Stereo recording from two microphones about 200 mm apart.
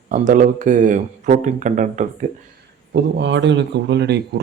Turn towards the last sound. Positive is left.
turn(degrees=-55)  # may be behind; listen again after turning